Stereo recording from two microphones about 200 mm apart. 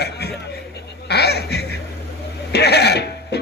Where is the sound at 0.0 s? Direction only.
55° left (ahead or behind).